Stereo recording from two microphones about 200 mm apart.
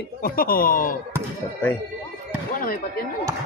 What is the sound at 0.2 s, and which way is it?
Speech, 45° left (ahead or behind).